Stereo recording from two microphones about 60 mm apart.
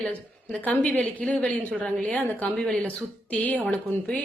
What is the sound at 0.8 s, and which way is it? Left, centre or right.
A woman's voice, centre.